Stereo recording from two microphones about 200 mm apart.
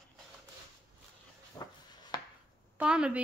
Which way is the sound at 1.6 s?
20° left (ahead or behind).